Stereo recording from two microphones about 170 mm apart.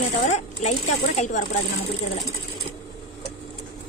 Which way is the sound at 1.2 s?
45° left (ahead or behind).